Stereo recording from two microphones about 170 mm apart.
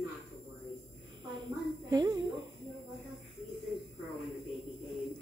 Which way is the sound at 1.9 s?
25° right (ahead or behind).